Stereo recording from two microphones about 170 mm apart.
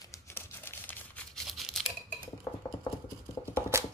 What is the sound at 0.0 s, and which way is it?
Tearing, 15° left (ahead or behind).